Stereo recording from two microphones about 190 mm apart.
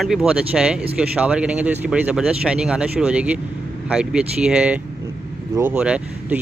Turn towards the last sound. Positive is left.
turn(degrees=-5)  # may be behind; listen again after turning